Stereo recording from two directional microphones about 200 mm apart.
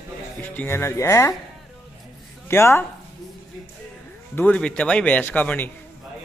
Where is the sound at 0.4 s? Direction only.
10° left (ahead or behind).